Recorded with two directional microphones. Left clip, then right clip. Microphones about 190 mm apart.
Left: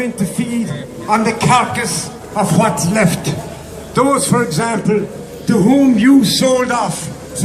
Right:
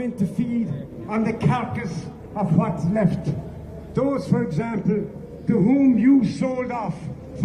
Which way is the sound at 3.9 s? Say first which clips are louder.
Left 10 dB; 30° left (ahead or behind).